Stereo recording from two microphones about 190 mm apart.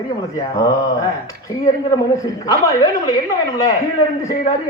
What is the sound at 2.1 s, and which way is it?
Speech, 15° left (ahead or behind).